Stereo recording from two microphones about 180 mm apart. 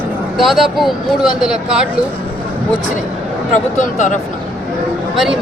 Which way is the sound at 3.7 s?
45° left (ahead or behind).